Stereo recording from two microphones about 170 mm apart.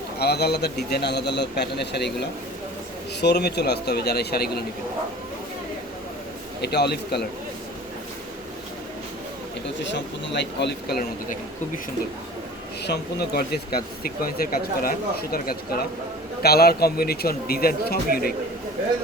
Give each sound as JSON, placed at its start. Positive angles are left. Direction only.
{"t": 0.2, "sound": "a man's voice", "side_deg": 70}
{"t": 3.2, "sound": "a man's voice", "side_deg": 80}
{"t": 6.6, "sound": "a man's voice", "side_deg": 75}
{"t": 9.9, "sound": "speech", "side_deg": 90}
{"t": 12.8, "sound": "speech", "side_deg": 70}